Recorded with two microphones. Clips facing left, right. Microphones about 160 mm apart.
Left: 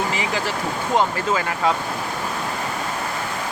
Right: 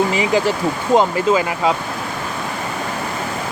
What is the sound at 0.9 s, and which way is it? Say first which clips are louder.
Speech: right 6 dB; 15° right (ahead or behind).